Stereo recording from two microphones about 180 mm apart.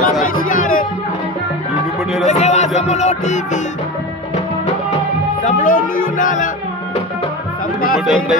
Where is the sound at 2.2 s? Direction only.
40° left (ahead or behind).